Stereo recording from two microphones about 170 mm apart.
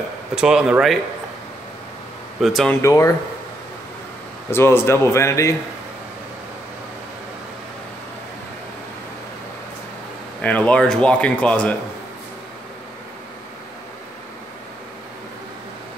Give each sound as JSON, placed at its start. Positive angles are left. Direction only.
{"t": 0.4, "sound": "speech", "side_deg": -5}
{"t": 2.4, "sound": "speech", "side_deg": 0}
{"t": 2.8, "sound": "speech", "side_deg": 20}
{"t": 4.5, "sound": "speech", "side_deg": 15}
{"t": 10.4, "sound": "speech", "side_deg": 5}